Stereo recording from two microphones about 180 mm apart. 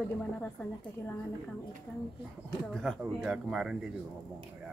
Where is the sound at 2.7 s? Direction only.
5° left (ahead or behind).